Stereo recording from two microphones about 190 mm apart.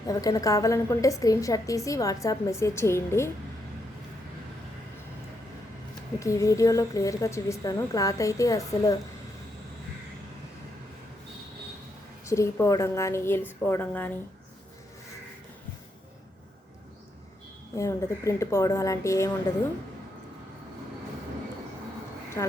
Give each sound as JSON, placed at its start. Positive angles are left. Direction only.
{"t": 0.1, "sound": "a woman's voice", "side_deg": 20}
{"t": 6.1, "sound": "a woman's voice", "side_deg": 15}
{"t": 12.2, "sound": "a woman's voice", "side_deg": 15}
{"t": 17.7, "sound": "a woman's voice", "side_deg": 15}
{"t": 22.4, "sound": "speech", "side_deg": 20}